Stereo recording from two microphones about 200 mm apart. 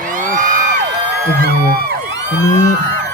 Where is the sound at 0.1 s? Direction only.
40° right (ahead or behind).